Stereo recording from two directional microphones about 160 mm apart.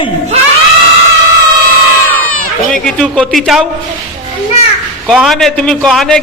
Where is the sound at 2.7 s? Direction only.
5° left (ahead or behind).